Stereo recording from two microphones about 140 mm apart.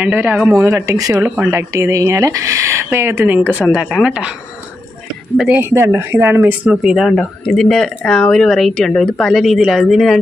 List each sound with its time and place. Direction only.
0.0 s speech: 10° right (ahead or behind)
1.1 s speech: 10° right (ahead or behind)
5.4 s speech: 15° right (ahead or behind); by 10.1 s centre (ahead or behind)